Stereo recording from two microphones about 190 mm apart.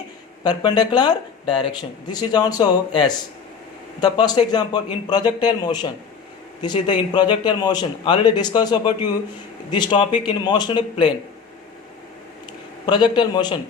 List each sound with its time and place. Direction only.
0.4 s speech: 20° left (ahead or behind)
4.0 s speech: 20° left (ahead or behind)
12.8 s speech: 25° left (ahead or behind)